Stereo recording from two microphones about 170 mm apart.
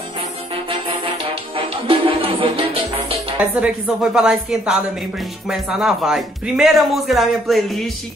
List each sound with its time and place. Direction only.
1.9 s music: 30° right (ahead or behind)
3.3 s speech: 5° right (ahead or behind)